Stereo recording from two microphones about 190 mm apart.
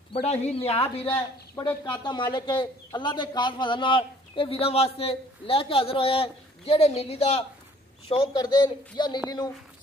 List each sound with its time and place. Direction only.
0.1 s a man's voice: 35° left (ahead or behind)